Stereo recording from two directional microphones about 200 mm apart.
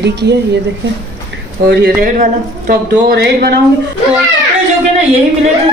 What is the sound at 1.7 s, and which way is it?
Speech, 55° right (ahead or behind).